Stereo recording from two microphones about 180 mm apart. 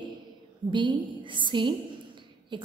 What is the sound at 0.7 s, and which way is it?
A woman's voice, 25° right (ahead or behind).